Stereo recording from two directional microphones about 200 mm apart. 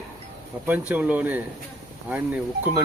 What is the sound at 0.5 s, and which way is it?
Speech, 10° right (ahead or behind).